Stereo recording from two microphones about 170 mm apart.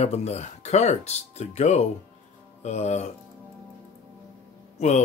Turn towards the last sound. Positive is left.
turn(degrees=40)  # may be behind; listen again after turning